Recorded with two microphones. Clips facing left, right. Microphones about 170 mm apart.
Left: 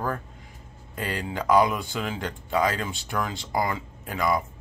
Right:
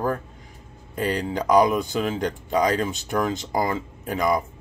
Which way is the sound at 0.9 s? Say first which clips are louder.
Right 6 dB; 40° right (ahead or behind).